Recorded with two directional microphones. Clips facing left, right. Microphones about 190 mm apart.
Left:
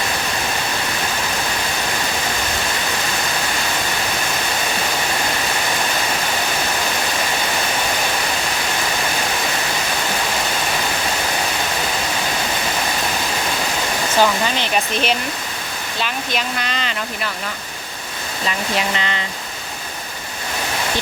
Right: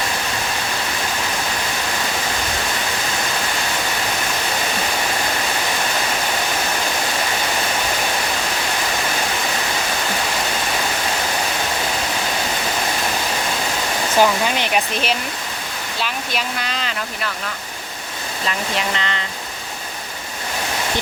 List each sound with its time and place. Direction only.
14.2 s hair dryer: 10° right (ahead or behind)
16.0 s speech: 5° right (ahead or behind)
18.9 s speech: 5° left (ahead or behind)